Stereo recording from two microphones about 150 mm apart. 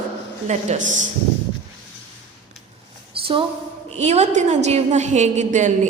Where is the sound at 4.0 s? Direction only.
50° right (ahead or behind).